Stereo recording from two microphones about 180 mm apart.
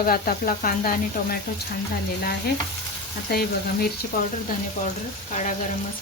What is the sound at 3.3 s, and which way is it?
Frying, 60° left (ahead or behind).